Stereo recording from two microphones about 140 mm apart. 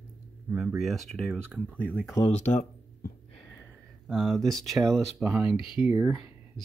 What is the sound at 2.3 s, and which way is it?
Speech, 55° left (ahead or behind).